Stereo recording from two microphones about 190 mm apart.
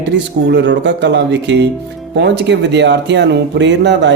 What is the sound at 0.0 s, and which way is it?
Speech, 65° right (ahead or behind).